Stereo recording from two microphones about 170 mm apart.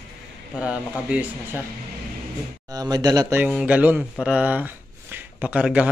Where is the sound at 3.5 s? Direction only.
5° right (ahead or behind).